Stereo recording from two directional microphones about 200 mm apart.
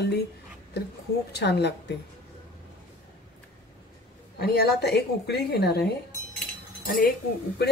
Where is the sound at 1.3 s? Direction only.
55° left (ahead or behind).